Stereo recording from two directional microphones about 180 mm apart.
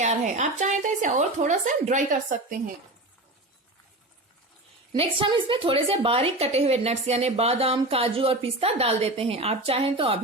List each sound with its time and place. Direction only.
0.0 s speech: 40° right (ahead or behind)
4.9 s a woman's voice: 30° right (ahead or behind)